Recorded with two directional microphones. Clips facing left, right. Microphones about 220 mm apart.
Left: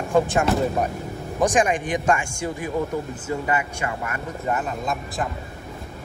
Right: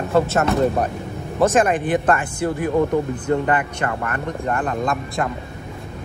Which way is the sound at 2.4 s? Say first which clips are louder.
Right 7 dB; 60° right (ahead or behind).